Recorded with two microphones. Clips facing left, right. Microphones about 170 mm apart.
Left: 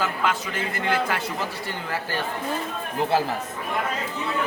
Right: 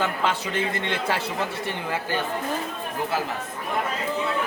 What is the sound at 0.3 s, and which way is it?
Speech, 30° right (ahead or behind).